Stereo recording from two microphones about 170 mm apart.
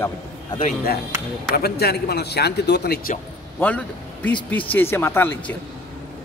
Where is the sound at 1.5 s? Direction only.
70° left (ahead or behind).